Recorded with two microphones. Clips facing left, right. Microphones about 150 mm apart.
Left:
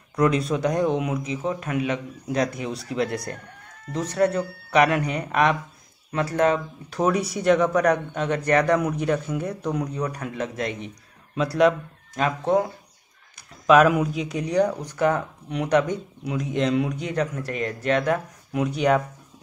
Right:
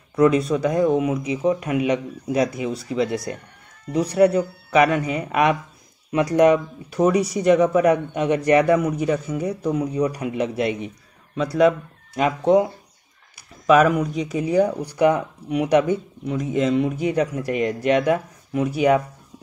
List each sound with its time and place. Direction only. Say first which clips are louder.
0.1 s speech: right 4 dB; 5° right (ahead or behind)
4.1 s speech: right 5 dB; 10° right (ahead or behind)
6.9 s speech: right 4 dB; centre (ahead or behind)
11.3 s speech: right 2 dB; centre (ahead or behind)
12.2 s speech: right 4 dB; 15° right (ahead or behind)
13.7 s speech: right 1 dB; centre (ahead or behind)